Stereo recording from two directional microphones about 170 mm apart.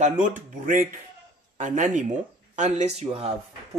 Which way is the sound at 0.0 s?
50° right (ahead or behind).